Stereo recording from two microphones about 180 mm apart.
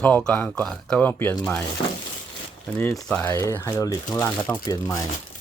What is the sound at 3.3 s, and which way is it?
Speech, 15° left (ahead or behind).